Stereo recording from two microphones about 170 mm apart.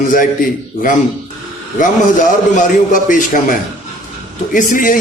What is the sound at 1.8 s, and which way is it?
A man's voice, 50° left (ahead or behind).